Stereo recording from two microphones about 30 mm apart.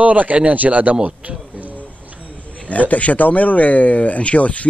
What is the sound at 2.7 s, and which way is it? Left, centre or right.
Speech, left.